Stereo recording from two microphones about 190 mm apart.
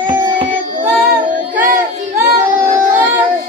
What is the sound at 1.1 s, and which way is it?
Child singing, 45° right (ahead or behind).